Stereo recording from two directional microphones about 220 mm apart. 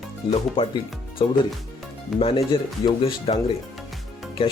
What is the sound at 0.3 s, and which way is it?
Speech, 25° left (ahead or behind).